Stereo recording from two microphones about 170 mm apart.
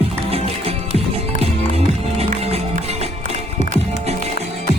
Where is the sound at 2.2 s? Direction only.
40° right (ahead or behind).